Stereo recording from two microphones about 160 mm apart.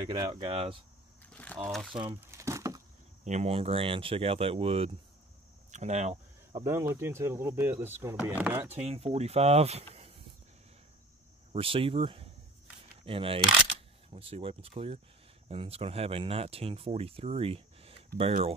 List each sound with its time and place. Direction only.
0.1 s speech: 30° right (ahead or behind)
1.2 s a sound: 10° left (ahead or behind)
2.1 s a sound: 20° right (ahead or behind)
3.3 s speech: 40° right (ahead or behind)
6.5 s speech: 15° right (ahead or behind)
8.7 s speech: 40° right (ahead or behind)
11.5 s speech: 35° right (ahead or behind)